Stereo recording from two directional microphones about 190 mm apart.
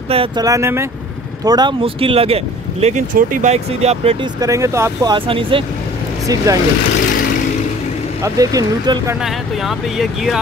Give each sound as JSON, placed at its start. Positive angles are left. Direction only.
{"t": 0.1, "sound": "speech", "side_deg": -30}
{"t": 0.5, "sound": "speech", "side_deg": -15}
{"t": 4.4, "sound": "speech", "side_deg": -15}
{"t": 8.2, "sound": "speech", "side_deg": -20}
{"t": 9.2, "sound": "speech", "side_deg": 0}